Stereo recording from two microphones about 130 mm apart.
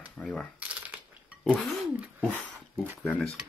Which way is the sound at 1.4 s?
Centre (ahead or behind).